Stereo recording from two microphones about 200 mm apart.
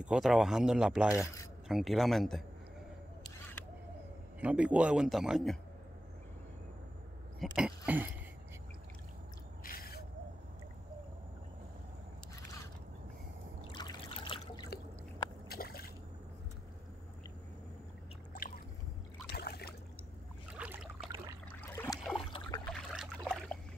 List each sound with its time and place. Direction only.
0.0 s a man's voice: 5° right (ahead or behind)
1.1 s speech: 15° left (ahead or behind)
1.7 s a man's voice: centre (ahead or behind)
4.4 s a man's voice: 5° right (ahead or behind)
7.3 s a man's voice: 5° right (ahead or behind)
9.6 s owl: 45° left (ahead or behind)
13.7 s trickle: 25° left (ahead or behind)
15.4 s a sound: 50° left (ahead or behind)
19.3 s a sound: 50° left (ahead or behind)
20.5 s boat: 5° right (ahead or behind)
21.5 s a sound: 10° left (ahead or behind)
22.7 s boat: centre (ahead or behind)